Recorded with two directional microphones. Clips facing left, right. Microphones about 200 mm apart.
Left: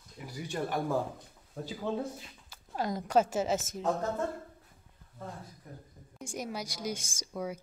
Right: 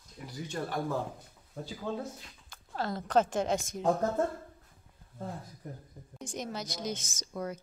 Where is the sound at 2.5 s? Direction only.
10° left (ahead or behind).